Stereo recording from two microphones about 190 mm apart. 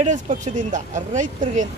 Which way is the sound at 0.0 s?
40° right (ahead or behind).